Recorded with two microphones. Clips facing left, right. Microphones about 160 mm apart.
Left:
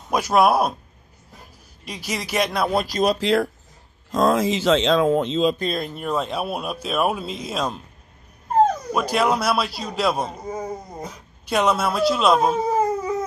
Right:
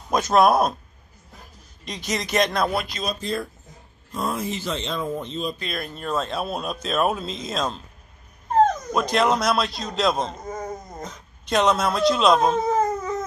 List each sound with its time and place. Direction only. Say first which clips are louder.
0.1 s speech: even; 10° left (ahead or behind)
1.9 s speech: right 1 dB; 10° left (ahead or behind)
3.0 s speech: left 9 dB; 75° left (ahead or behind)
4.1 s speech: left 8 dB; 90° left
5.8 s speech: left 2 dB; 15° left (ahead or behind)
8.9 s speech: even; 5° left (ahead or behind)